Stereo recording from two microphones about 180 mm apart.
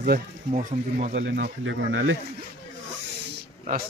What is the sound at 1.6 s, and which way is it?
Speech, 90° right.